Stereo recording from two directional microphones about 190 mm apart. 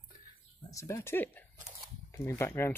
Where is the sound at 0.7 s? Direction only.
15° left (ahead or behind).